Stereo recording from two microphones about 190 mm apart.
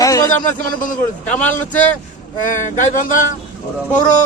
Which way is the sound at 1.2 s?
10° left (ahead or behind).